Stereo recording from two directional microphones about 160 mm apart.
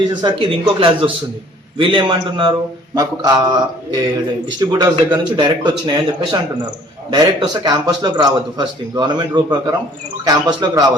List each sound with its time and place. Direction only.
0.2 s a man's voice: 35° right (ahead or behind)
4.6 s a man's voice: 25° right (ahead or behind)